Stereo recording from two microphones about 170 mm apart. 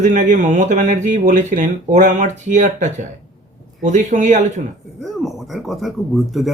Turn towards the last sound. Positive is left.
turn(degrees=0)  # may be behind; listen again after turning